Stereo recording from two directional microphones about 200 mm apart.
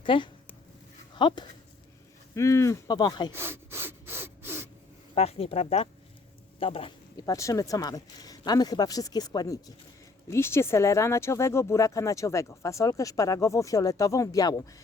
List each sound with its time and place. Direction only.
0.0 s speech: 25° left (ahead or behind)
3.3 s wood: 10° right (ahead or behind)
5.1 s speech: 30° left (ahead or behind)